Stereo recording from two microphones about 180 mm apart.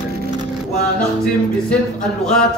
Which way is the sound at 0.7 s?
5° left (ahead or behind).